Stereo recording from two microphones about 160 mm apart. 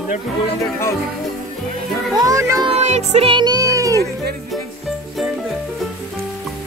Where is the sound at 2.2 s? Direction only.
20° right (ahead or behind).